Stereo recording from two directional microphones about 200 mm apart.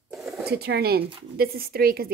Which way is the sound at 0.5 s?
55° right (ahead or behind).